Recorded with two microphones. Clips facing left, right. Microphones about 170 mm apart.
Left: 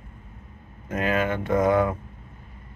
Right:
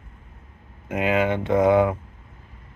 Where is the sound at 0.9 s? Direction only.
15° right (ahead or behind).